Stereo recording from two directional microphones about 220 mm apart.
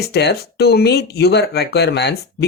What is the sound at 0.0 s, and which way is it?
Speech, 50° left (ahead or behind).